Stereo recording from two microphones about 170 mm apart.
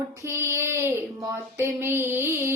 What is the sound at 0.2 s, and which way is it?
Child singing, 15° right (ahead or behind).